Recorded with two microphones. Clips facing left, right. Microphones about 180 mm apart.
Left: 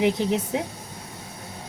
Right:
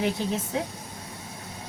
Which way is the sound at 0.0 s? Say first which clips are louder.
Left 5 dB; 20° left (ahead or behind).